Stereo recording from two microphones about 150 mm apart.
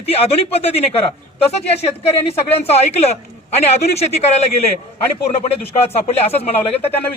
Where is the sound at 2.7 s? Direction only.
45° left (ahead or behind).